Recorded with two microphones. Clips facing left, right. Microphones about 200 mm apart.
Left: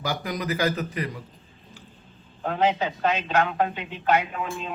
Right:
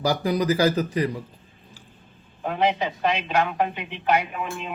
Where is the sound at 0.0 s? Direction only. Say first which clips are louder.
Right 7 dB; 35° right (ahead or behind).